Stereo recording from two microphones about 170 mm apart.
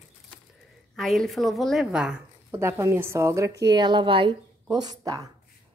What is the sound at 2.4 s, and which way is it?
Speech, 15° right (ahead or behind).